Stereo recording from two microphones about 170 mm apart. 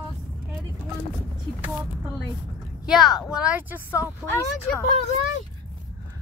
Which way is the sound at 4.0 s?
15° left (ahead or behind).